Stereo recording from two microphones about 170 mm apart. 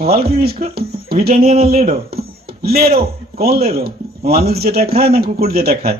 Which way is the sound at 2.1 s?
65° right (ahead or behind).